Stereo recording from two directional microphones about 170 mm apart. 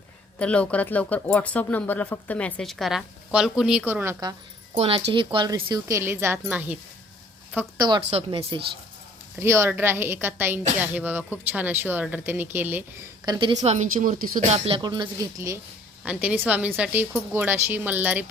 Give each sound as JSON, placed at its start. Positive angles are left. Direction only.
{"t": 0.3, "sound": "speech", "side_deg": 5}
{"t": 4.8, "sound": "speech", "side_deg": -35}
{"t": 7.8, "sound": "speech", "side_deg": -25}
{"t": 9.4, "sound": "speech", "side_deg": -15}
{"t": 13.2, "sound": "speech", "side_deg": -25}
{"t": 13.6, "sound": "speech", "side_deg": -45}
{"t": 14.6, "sound": "speech", "side_deg": -30}